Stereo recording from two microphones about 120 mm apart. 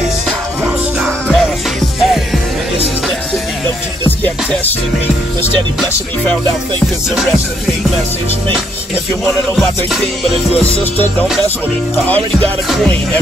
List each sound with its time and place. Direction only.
1.0 s music: centre (ahead or behind)
10.6 s music: 15° left (ahead or behind)